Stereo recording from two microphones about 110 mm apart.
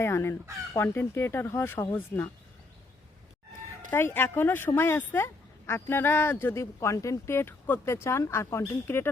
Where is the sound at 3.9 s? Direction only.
20° left (ahead or behind).